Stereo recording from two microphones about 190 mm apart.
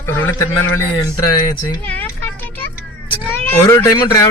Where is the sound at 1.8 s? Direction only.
10° left (ahead or behind).